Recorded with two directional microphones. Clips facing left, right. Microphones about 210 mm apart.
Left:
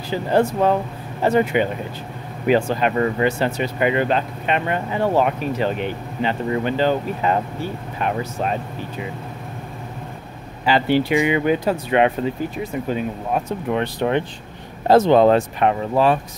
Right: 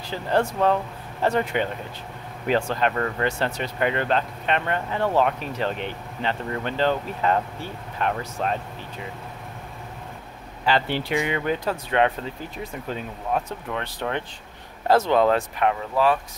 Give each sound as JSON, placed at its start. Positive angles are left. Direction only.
{"t": 0.1, "sound": "speech", "side_deg": 5}
{"t": 10.6, "sound": "speech", "side_deg": 5}